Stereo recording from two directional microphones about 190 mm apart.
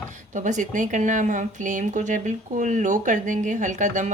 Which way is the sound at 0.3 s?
40° right (ahead or behind).